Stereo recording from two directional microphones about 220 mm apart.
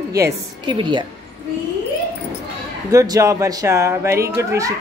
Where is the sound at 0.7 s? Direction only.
20° right (ahead or behind).